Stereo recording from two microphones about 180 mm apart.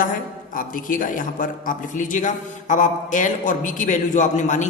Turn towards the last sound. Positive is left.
turn(degrees=40)  # may be behind; listen again after turning